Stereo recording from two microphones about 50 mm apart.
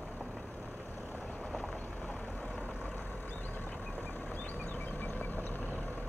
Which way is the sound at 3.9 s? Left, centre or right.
Left.